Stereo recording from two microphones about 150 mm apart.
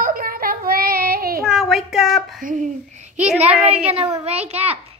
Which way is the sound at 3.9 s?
40° right (ahead or behind).